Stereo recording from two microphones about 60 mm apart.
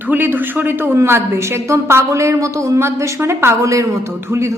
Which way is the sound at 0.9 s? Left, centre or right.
Right.